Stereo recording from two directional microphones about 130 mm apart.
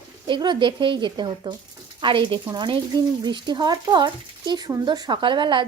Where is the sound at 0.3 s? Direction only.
35° right (ahead or behind).